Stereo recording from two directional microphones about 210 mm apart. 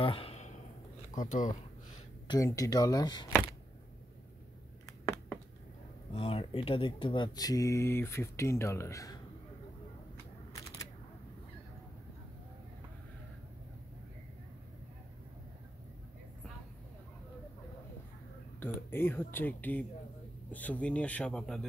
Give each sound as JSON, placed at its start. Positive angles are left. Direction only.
{"t": 0.0, "sound": "a sound", "side_deg": 25}
{"t": 1.1, "sound": "speech", "side_deg": 40}
{"t": 2.2, "sound": "speech", "side_deg": 15}
{"t": 6.1, "sound": "speech", "side_deg": 25}
{"t": 10.5, "sound": "single-lens reflex camera", "side_deg": 15}
{"t": 18.6, "sound": "speech", "side_deg": 10}